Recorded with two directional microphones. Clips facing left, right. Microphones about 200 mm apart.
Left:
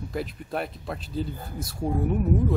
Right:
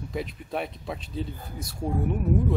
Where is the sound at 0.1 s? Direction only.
Centre (ahead or behind).